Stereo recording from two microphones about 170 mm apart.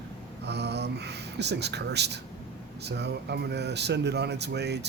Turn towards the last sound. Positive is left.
turn(degrees=-80)